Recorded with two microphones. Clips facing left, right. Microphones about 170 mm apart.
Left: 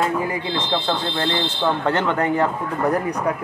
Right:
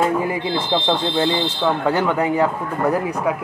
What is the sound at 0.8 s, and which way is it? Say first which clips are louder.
Speech: right 4 dB; 15° right (ahead or behind).